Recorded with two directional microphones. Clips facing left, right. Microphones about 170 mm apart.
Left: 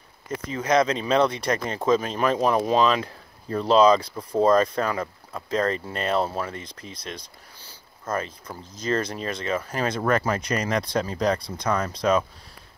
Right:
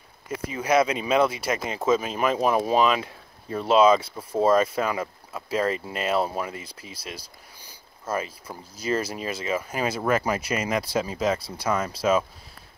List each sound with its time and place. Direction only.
0.3 s speech: 10° right (ahead or behind)